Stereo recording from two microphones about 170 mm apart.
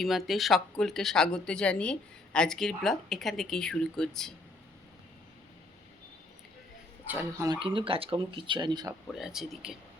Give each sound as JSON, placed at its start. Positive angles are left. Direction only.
{"t": 0.0, "sound": "speech", "side_deg": 0}
{"t": 7.1, "sound": "speech", "side_deg": -15}
{"t": 7.6, "sound": "speech", "side_deg": -30}
{"t": 9.0, "sound": "speech", "side_deg": 0}